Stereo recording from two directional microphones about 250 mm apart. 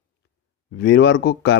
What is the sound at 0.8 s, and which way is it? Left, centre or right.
Speech, left.